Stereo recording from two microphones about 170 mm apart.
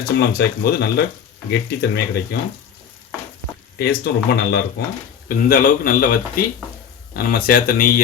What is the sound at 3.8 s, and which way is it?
Speech, 75° left (ahead or behind).